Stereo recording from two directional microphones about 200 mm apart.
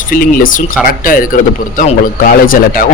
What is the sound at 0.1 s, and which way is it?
Speech, 45° left (ahead or behind).